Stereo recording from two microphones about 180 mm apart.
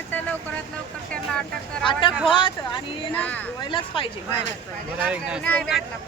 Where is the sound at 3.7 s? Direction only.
30° left (ahead or behind).